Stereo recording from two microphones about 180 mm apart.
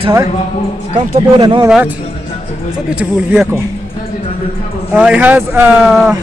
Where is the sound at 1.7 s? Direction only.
5° right (ahead or behind).